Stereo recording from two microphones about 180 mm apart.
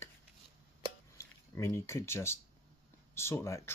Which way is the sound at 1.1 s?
15° left (ahead or behind).